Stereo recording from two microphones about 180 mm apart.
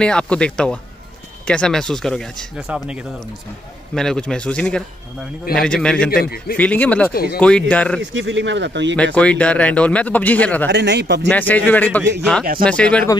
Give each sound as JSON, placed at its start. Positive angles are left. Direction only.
{"t": 0.0, "sound": "speech", "side_deg": 5}
{"t": 6.0, "sound": "a man's voice", "side_deg": 55}
{"t": 6.5, "sound": "speech", "side_deg": 10}
{"t": 8.0, "sound": "speech", "side_deg": -80}
{"t": 8.9, "sound": "speech", "side_deg": 5}
{"t": 10.7, "sound": "speech", "side_deg": -70}
{"t": 11.2, "sound": "speech", "side_deg": 10}